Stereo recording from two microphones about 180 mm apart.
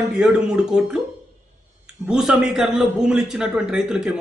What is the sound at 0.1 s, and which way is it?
A man's voice, 5° right (ahead or behind).